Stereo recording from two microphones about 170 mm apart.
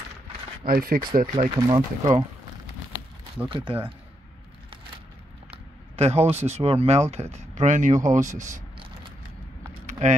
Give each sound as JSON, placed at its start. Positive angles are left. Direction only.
{"t": 0.7, "sound": "speech", "side_deg": -60}
{"t": 1.7, "sound": "speech", "side_deg": -25}
{"t": 3.4, "sound": "speech", "side_deg": -30}
{"t": 5.9, "sound": "speech", "side_deg": -40}
{"t": 9.8, "sound": "vehicle", "side_deg": -45}